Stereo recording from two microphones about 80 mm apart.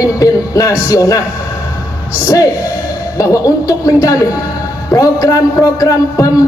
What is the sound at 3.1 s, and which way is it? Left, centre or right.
A man's voice, left.